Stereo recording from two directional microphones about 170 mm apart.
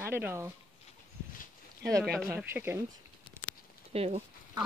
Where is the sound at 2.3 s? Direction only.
15° right (ahead or behind).